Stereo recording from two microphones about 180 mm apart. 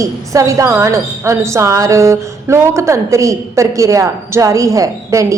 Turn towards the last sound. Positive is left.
turn(degrees=-15)  # may be behind; listen again after turning